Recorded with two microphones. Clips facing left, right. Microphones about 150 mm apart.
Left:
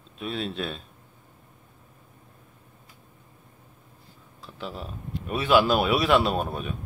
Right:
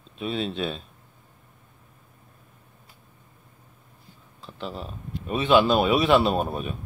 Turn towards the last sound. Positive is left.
turn(degrees=0)  # may be behind; listen again after turning